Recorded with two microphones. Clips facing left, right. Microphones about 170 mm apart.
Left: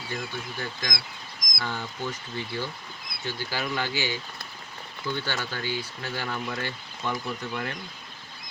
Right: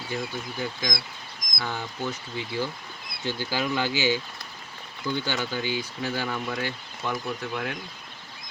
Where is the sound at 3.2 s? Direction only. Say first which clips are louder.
Right 4 dB; 15° right (ahead or behind).